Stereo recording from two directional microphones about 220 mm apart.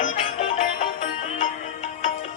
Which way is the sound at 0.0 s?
40° left (ahead or behind).